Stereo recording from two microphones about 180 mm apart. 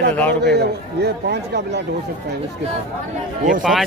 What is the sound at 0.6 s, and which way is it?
Speech, 65° right (ahead or behind).